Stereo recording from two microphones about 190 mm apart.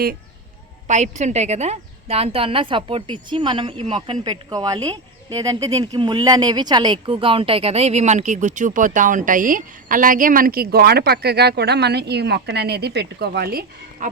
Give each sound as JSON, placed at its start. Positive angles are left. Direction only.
{"t": 0.9, "sound": "a woman's voice", "side_deg": -40}